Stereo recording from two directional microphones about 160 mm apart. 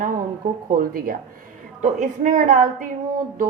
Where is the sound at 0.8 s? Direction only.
60° right (ahead or behind).